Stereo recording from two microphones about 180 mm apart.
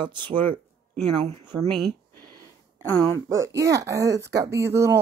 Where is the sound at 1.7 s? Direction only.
Centre (ahead or behind).